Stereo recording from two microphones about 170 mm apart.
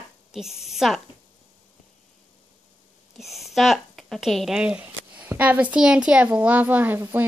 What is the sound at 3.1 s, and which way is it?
A woman's voice, centre (ahead or behind).